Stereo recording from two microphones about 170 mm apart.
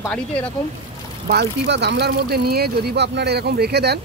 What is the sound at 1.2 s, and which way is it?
Speech, 75° right (ahead or behind).